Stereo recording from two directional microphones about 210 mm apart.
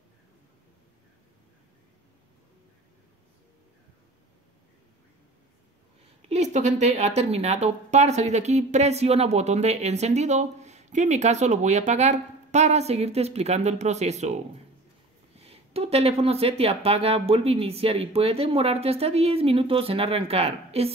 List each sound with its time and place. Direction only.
6.2 s speech: 35° right (ahead or behind)